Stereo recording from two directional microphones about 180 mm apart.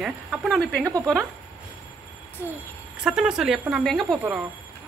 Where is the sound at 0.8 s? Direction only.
15° right (ahead or behind).